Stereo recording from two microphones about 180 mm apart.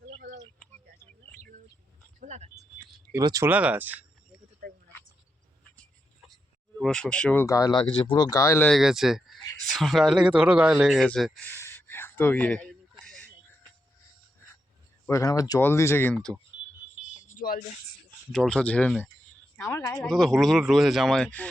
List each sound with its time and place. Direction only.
0.0 s a sound: 65° right (ahead or behind)
2.2 s speech: 40° right (ahead or behind)
3.1 s speech: 20° right (ahead or behind)
6.8 s speech: 5° left (ahead or behind)
8.6 s speech: centre (ahead or behind)
13.1 s a sound: 5° left (ahead or behind)
15.0 s speech: 15° left (ahead or behind)
17.3 s a sound: 50° left (ahead or behind)
18.3 s speech: 5° left (ahead or behind)
20.1 s speech: 5° left (ahead or behind)